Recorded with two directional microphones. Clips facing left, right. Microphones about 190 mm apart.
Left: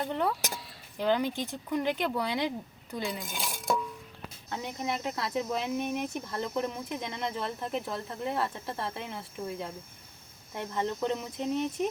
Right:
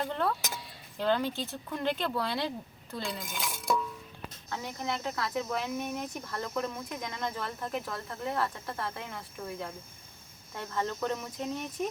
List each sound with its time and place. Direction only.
0.0 s speech: 15° left (ahead or behind)